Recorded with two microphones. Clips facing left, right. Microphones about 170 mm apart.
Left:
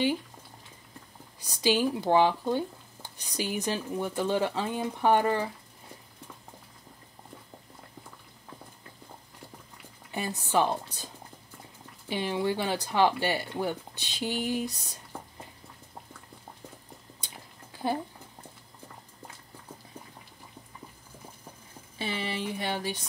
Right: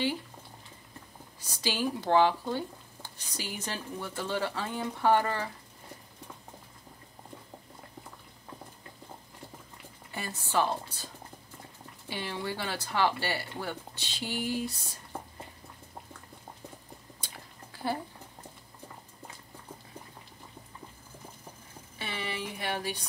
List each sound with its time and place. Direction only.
1.5 s speech: 15° left (ahead or behind)
10.1 s speech: 20° left (ahead or behind)
12.1 s speech: 20° left (ahead or behind)
21.9 s speech: 25° left (ahead or behind)